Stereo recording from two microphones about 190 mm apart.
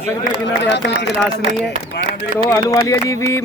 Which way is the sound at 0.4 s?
65° left (ahead or behind).